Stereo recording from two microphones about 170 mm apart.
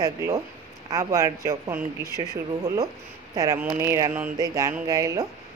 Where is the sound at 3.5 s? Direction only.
10° right (ahead or behind).